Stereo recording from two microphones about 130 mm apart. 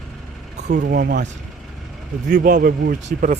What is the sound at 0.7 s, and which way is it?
Speech, 70° right (ahead or behind).